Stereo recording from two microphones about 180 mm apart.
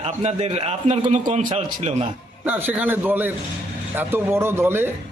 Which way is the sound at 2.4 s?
10° right (ahead or behind).